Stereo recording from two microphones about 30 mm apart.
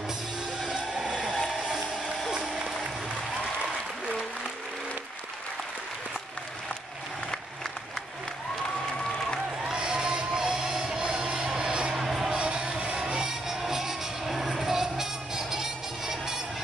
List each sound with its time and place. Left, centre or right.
9.6 s music: centre
11.0 s music: right
13.5 s music: centre